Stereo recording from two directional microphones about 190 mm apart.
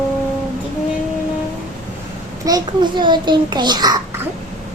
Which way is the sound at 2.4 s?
20° right (ahead or behind).